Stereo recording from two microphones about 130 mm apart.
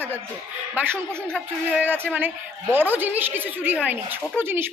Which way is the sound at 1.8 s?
15° right (ahead or behind).